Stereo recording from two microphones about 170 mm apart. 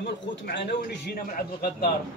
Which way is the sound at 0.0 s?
80° left.